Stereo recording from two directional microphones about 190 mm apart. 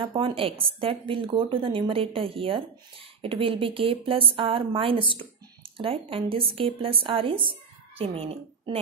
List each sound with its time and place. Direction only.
0.0 s a woman's voice: 30° right (ahead or behind)